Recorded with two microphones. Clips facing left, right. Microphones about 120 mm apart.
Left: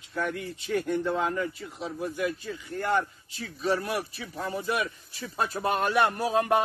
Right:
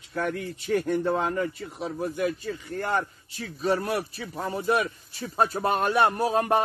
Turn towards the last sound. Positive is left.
turn(degrees=-35)  # may be behind; listen again after turning